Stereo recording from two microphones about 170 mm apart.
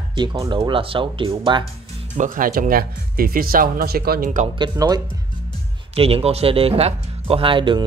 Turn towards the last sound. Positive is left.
turn(degrees=-30)  # may be behind; listen again after turning